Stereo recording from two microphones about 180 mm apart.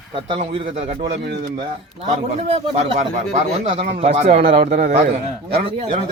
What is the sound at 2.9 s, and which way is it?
A man's voice, 35° right (ahead or behind).